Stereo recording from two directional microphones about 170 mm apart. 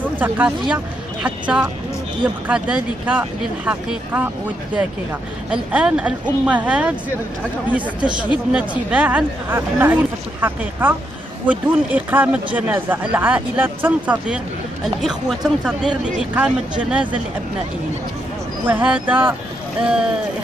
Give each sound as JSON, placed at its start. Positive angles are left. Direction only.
{"t": 0.0, "sound": "a sound", "side_deg": -10}
{"t": 1.2, "sound": "speech", "side_deg": -5}
{"t": 5.5, "sound": "speech", "side_deg": -5}
{"t": 18.7, "sound": "speech", "side_deg": -10}